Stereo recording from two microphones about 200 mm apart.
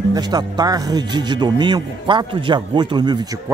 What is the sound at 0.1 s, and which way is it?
Speech, 20° right (ahead or behind).